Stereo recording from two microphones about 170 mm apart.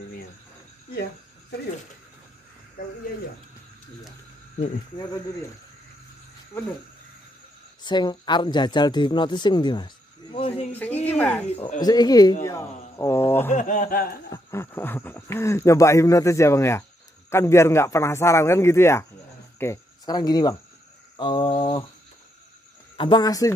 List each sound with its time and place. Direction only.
7.8 s speech: 25° left (ahead or behind)
10.7 s speech: 10° left (ahead or behind)
11.8 s speech: 25° left (ahead or behind)
13.5 s speech: 50° left (ahead or behind)
14.3 s speech: 15° left (ahead or behind); by 21.8 s 30° left (ahead or behind)
22.9 s speech: 25° left (ahead or behind)